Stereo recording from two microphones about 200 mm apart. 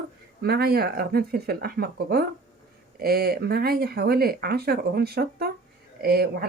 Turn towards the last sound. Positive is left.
turn(degrees=-55)  # may be behind; listen again after turning